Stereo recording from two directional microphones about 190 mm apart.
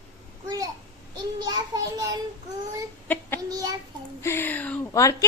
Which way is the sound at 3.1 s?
10° left (ahead or behind).